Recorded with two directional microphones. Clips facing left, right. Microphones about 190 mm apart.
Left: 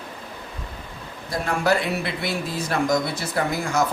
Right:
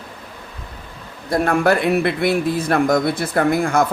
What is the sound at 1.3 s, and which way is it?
Speech, 55° right (ahead or behind).